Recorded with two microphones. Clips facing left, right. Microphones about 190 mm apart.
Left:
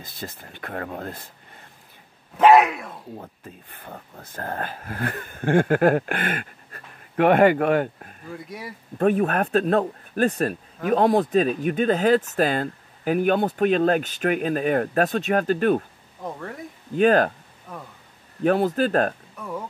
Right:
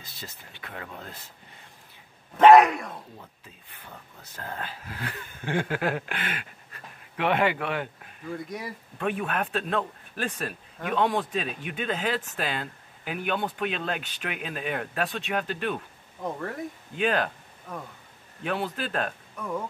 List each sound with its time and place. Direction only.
0.0 s speech: 50° left (ahead or behind)
2.3 s speech: centre (ahead or behind)
3.2 s speech: 50° left (ahead or behind)
8.3 s speech: centre (ahead or behind)
8.9 s speech: 40° left (ahead or behind)
16.2 s speech: centre (ahead or behind)
16.9 s speech: 45° left (ahead or behind)
18.4 s speech: 45° left (ahead or behind)